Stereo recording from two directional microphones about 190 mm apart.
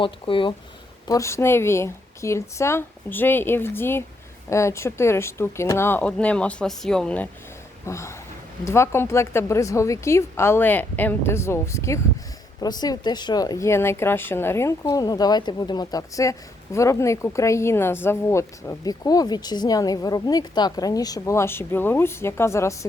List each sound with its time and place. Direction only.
0.0 s speech: 25° left (ahead or behind)